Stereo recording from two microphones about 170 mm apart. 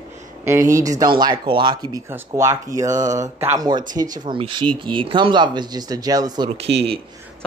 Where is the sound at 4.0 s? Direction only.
30° right (ahead or behind).